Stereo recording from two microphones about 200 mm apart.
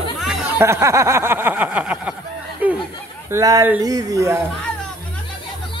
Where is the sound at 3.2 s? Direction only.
15° right (ahead or behind).